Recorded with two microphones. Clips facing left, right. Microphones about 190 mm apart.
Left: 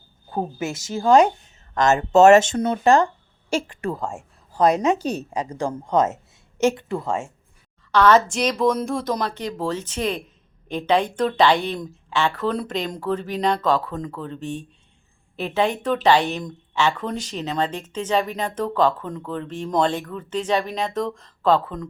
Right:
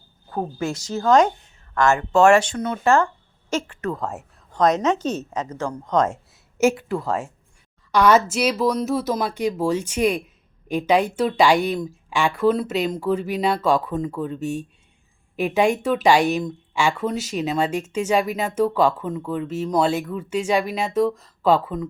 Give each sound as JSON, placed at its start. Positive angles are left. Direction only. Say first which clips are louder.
{"t": 0.3, "sound": "speech", "louder": "right 1 dB", "side_deg": 25}
{"t": 0.9, "sound": "a woman's voice", "louder": "left 1 dB", "side_deg": 10}
{"t": 1.7, "sound": "a woman's voice", "louder": "left 2 dB", "side_deg": 20}
{"t": 3.9, "sound": "speech", "louder": "right 1 dB", "side_deg": 0}
{"t": 4.6, "sound": "a woman's voice", "louder": "left 1 dB", "side_deg": 10}
{"t": 6.6, "sound": "a woman's voice", "louder": "right 1 dB", "side_deg": -5}